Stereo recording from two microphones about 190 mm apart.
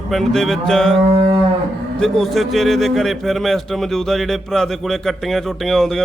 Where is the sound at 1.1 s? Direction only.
30° right (ahead or behind).